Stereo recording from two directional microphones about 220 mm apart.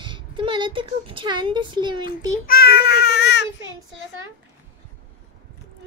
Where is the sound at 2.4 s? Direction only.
45° left (ahead or behind).